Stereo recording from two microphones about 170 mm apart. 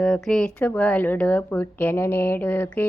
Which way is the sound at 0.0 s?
5° left (ahead or behind).